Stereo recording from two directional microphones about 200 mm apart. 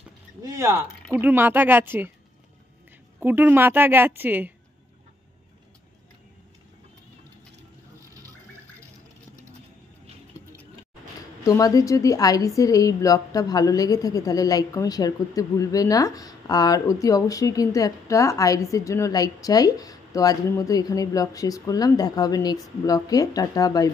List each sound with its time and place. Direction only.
1.1 s a woman's voice: 10° right (ahead or behind)
3.2 s a woman's voice: 10° right (ahead or behind)
11.4 s a woman's voice: 15° left (ahead or behind)